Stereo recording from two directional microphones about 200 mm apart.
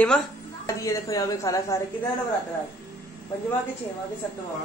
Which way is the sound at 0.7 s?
15° left (ahead or behind).